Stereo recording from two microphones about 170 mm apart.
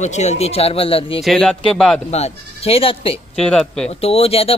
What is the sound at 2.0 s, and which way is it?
Speech, 40° left (ahead or behind).